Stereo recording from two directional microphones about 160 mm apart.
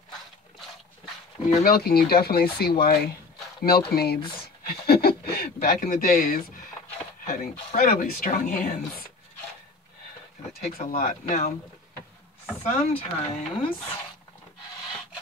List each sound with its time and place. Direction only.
1.6 s speech: 70° left (ahead or behind)
4.6 s a sound: 75° left (ahead or behind); by 6.3 s 60° left (ahead or behind)
7.2 s speech: 65° left (ahead or behind); by 8.6 s 50° left (ahead or behind)
8.6 s speech: 70° left (ahead or behind)
10.6 s speech: 60° left (ahead or behind)
12.6 s speech: 40° left (ahead or behind)